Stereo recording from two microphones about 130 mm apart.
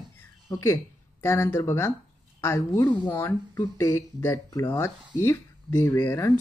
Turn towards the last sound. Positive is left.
turn(degrees=20)  # may be behind; listen again after turning